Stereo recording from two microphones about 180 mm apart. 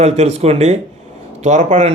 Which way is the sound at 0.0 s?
35° right (ahead or behind).